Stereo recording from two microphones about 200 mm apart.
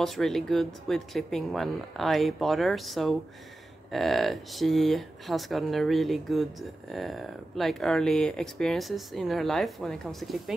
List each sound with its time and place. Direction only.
0.0 s speech: centre (ahead or behind)